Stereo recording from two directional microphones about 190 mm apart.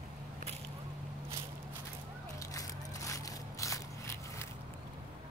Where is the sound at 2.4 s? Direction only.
15° left (ahead or behind).